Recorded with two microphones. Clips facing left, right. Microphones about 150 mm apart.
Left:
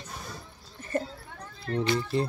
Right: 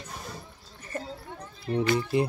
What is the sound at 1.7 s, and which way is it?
Speech, 15° right (ahead or behind).